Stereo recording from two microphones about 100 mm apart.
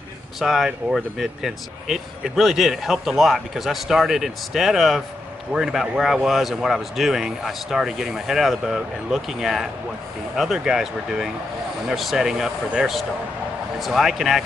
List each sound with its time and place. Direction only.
0.4 s speech: 5° right (ahead or behind)